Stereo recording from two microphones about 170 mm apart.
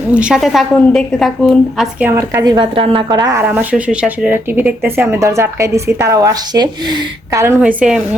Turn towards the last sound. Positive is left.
turn(degrees=-5)  # may be behind; listen again after turning